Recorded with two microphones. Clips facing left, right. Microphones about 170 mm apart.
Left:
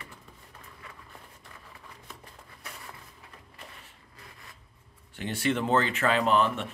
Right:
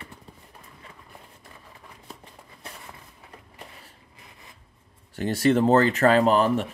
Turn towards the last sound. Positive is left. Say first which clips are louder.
# right 5 dB
turn(degrees=-40)  # may be behind; listen again after turning